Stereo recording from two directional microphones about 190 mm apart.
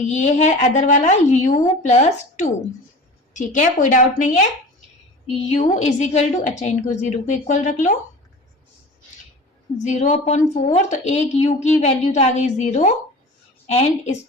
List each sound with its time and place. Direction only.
0.1 s a woman's voice: 35° left (ahead or behind)
9.8 s a woman's voice: 35° left (ahead or behind)